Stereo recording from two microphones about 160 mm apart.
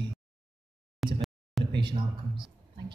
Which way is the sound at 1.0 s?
Centre (ahead or behind).